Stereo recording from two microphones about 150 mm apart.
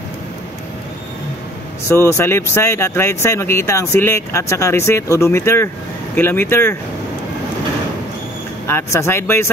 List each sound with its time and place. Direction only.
1.9 s speech: 15° left (ahead or behind)
8.6 s speech: 15° left (ahead or behind)